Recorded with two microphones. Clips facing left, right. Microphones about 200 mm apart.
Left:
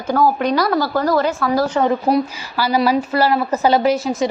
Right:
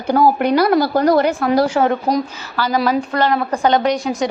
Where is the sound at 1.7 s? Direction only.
5° right (ahead or behind).